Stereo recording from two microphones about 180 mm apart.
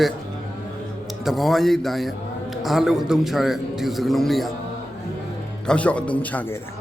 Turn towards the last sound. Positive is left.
turn(degrees=10)  # may be behind; listen again after turning